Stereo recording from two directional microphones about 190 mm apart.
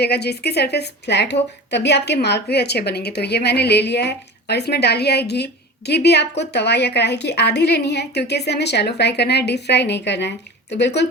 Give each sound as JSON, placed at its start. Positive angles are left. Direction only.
{"t": 0.0, "sound": "a woman's voice", "side_deg": 60}